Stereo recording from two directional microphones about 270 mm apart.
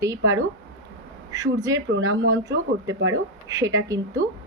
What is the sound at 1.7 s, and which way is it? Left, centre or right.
Speech, right.